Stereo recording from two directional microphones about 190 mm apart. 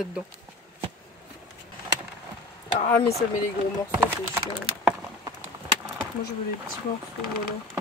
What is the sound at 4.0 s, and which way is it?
Speech, 10° right (ahead or behind).